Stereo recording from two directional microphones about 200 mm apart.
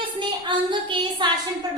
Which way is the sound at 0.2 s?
25° right (ahead or behind).